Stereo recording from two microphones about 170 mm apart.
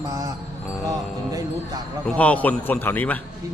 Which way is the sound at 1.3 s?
20° right (ahead or behind).